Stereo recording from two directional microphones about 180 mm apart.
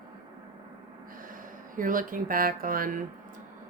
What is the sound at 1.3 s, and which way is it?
Speech, 50° right (ahead or behind).